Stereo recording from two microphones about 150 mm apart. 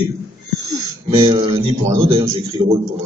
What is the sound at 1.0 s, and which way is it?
Speech, 35° right (ahead or behind).